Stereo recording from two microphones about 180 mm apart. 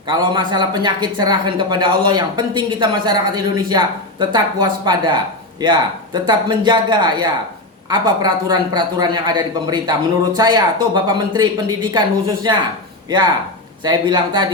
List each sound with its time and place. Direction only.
0.1 s speech: 25° right (ahead or behind)